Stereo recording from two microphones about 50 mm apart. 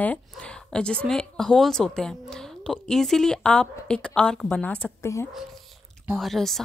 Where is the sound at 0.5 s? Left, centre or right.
Centre.